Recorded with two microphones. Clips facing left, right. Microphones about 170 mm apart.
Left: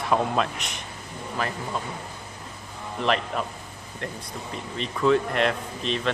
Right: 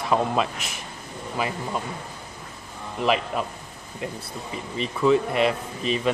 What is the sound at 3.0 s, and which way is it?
Speech, 5° right (ahead or behind).